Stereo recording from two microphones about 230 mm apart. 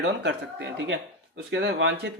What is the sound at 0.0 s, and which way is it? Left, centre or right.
Speech, right.